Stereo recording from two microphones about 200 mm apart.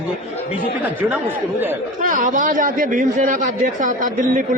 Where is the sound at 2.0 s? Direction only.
40° right (ahead or behind).